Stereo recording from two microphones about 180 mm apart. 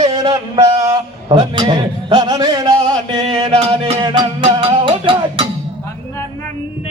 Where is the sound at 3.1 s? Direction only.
30° right (ahead or behind).